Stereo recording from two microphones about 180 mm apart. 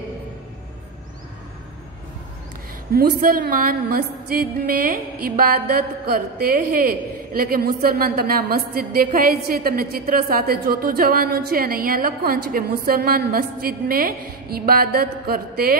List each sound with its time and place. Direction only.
2.9 s a woman's voice: 55° right (ahead or behind)